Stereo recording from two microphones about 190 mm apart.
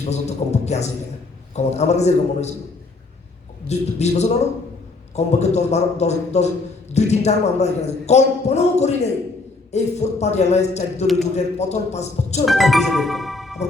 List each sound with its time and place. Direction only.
0.0 s a man's voice: 35° left (ahead or behind)
3.7 s a man's voice: 35° left (ahead or behind)
11.0 s music: centre (ahead or behind)
11.3 s a man's voice: 35° left (ahead or behind)
12.5 s music: centre (ahead or behind)